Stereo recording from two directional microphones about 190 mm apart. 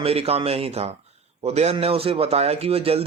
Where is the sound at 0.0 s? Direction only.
30° right (ahead or behind).